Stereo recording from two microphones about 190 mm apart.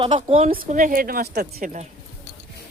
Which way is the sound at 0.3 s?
30° right (ahead or behind).